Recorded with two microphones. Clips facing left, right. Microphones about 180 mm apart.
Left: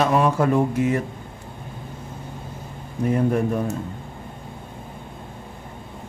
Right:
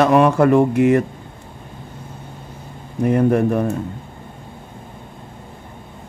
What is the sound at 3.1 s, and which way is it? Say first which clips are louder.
Speech: right 5 dB; 65° right (ahead or behind).